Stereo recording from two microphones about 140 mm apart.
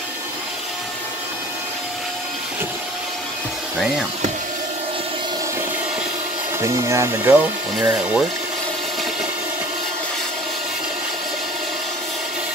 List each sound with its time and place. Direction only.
6.6 s speech: 20° right (ahead or behind)